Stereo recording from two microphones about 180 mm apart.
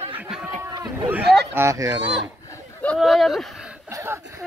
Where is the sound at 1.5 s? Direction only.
15° right (ahead or behind).